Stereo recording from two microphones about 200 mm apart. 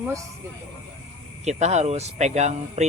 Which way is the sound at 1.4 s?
35° right (ahead or behind).